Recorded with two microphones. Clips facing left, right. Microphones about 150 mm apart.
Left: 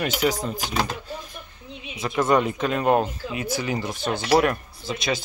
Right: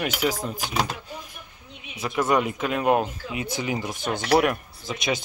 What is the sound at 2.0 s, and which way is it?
Speech, 10° right (ahead or behind).